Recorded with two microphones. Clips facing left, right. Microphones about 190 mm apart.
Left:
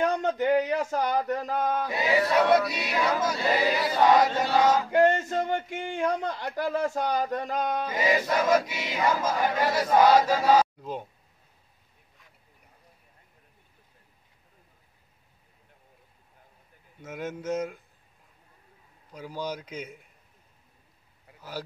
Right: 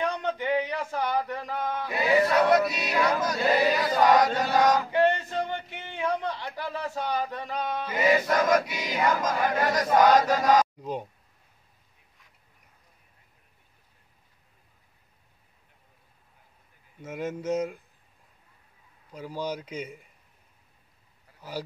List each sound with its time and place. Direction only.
0.0 s a man's voice: 45° left (ahead or behind)
2.0 s chant: 15° left (ahead or behind)
3.2 s chant: 5° left (ahead or behind)
4.9 s a man's voice: 45° left (ahead or behind)
8.0 s chant: 5° left (ahead or behind)
17.0 s speech: 10° right (ahead or behind)
19.1 s speech: 10° right (ahead or behind)
21.4 s speech: 10° right (ahead or behind)